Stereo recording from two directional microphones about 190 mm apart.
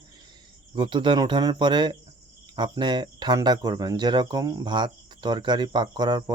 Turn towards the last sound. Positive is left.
turn(degrees=-20)  # may be behind; listen again after turning